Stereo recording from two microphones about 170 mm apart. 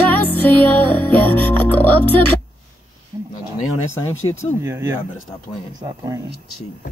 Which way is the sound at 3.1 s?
25° right (ahead or behind).